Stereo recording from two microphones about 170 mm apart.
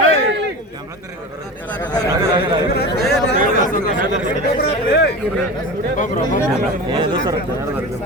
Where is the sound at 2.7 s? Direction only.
65° left (ahead or behind).